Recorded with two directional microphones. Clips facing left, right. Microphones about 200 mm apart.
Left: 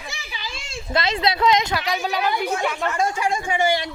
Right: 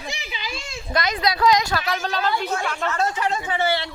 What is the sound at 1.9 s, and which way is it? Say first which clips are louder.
A woman's voice: left 2 dB; 10° left (ahead or behind).